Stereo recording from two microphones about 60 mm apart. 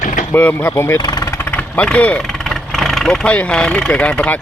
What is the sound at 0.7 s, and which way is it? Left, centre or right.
Speech, left.